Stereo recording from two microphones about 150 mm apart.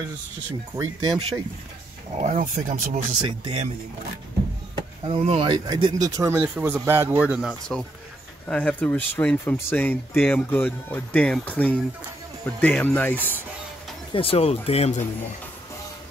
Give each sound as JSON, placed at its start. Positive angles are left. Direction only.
{"t": 0.7, "sound": "speech", "side_deg": -25}
{"t": 2.1, "sound": "speech", "side_deg": -60}
{"t": 3.2, "sound": "speech", "side_deg": -35}
{"t": 5.0, "sound": "speech", "side_deg": -40}
{"t": 8.5, "sound": "speech", "side_deg": 10}
{"t": 14.1, "sound": "speech", "side_deg": 40}